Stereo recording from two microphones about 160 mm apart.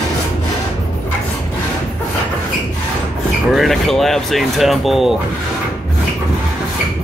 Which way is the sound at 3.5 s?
Centre (ahead or behind).